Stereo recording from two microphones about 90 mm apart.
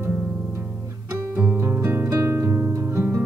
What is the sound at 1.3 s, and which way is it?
Music, 25° right (ahead or behind).